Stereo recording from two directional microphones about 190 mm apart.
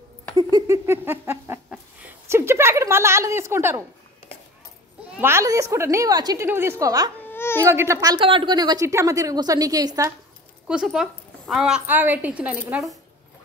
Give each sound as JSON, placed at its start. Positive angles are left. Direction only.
{"t": 0.4, "sound": "a sound", "side_deg": -20}
{"t": 5.2, "sound": "a woman's voice", "side_deg": -15}
{"t": 7.2, "sound": "baby cry", "side_deg": 10}
{"t": 7.6, "sound": "a woman's voice", "side_deg": -15}
{"t": 10.7, "sound": "a woman's voice", "side_deg": -5}